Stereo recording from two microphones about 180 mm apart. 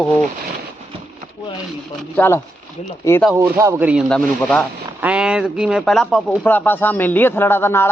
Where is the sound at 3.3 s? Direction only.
15° right (ahead or behind); by 4.6 s 5° left (ahead or behind).